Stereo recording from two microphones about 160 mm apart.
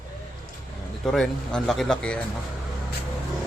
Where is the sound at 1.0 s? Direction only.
5° left (ahead or behind).